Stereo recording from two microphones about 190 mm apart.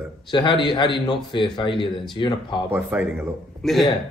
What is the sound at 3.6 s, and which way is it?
Speech, centre (ahead or behind).